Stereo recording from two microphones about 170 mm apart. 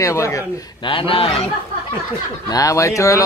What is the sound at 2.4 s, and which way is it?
Speech, 20° left (ahead or behind).